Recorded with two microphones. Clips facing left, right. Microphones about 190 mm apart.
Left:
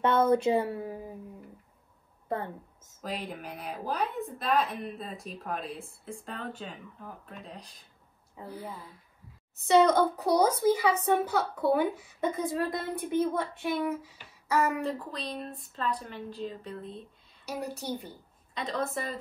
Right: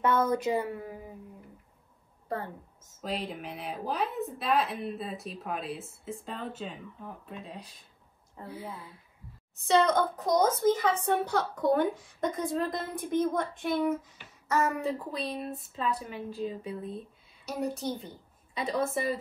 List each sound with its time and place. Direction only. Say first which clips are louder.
0.0 s speech: left 3 dB; 30° left (ahead or behind)
2.2 s a woman's voice: left 2 dB; 25° left (ahead or behind)
3.0 s speech: right 2 dB; centre (ahead or behind)
9.7 s a woman's voice: left 3 dB; 10° left (ahead or behind)
14.8 s a woman's voice: right 1 dB; 5° right (ahead or behind)
17.8 s a woman's voice: right 1 dB; 5° left (ahead or behind)
18.5 s a woman's voice: right 3 dB; 10° right (ahead or behind)